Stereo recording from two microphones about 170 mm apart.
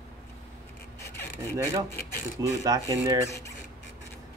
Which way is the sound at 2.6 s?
20° right (ahead or behind).